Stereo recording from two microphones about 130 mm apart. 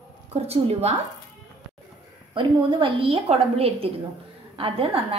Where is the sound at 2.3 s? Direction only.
40° right (ahead or behind).